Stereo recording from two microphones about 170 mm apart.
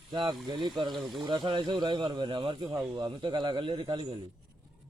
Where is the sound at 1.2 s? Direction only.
25° right (ahead or behind).